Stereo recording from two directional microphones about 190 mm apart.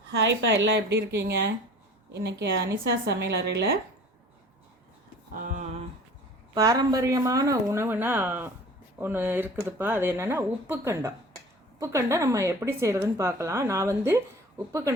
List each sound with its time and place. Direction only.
0.1 s a woman's voice: 70° right (ahead or behind)
5.3 s a sound: 45° right (ahead or behind)
6.5 s speech: 20° right (ahead or behind)